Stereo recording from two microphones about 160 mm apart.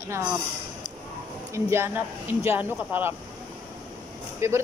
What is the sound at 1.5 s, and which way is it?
Speech, 15° right (ahead or behind).